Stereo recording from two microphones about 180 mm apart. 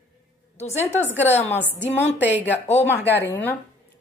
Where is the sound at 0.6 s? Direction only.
35° left (ahead or behind).